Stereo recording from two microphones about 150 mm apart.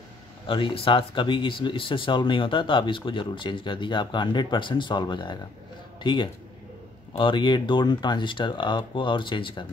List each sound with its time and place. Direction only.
0.5 s speech: 35° left (ahead or behind)